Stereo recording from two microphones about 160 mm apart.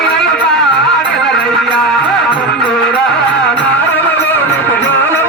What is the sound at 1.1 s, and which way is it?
Music, centre (ahead or behind).